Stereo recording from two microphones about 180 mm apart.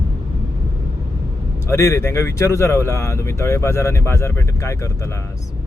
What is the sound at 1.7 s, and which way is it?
Speech, 15° left (ahead or behind).